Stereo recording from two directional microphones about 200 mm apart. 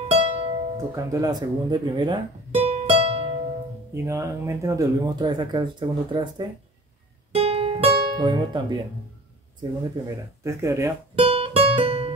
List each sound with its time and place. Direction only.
0.1 s music: 30° right (ahead or behind)
0.7 s speech: 15° right (ahead or behind)
3.9 s speech: 15° right (ahead or behind)
7.3 s music: 30° right (ahead or behind)
9.6 s speech: 15° right (ahead or behind)
11.1 s music: 30° right (ahead or behind)